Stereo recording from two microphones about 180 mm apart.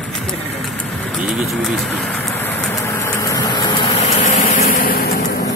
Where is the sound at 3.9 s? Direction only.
40° left (ahead or behind).